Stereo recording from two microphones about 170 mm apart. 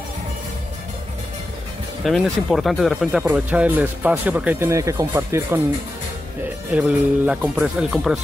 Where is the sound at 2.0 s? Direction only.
Centre (ahead or behind); by 5.6 s 15° right (ahead or behind).